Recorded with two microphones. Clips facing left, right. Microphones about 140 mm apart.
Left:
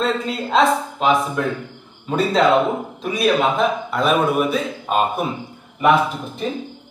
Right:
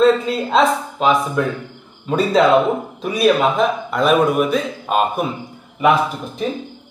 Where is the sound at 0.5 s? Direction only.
Centre (ahead or behind).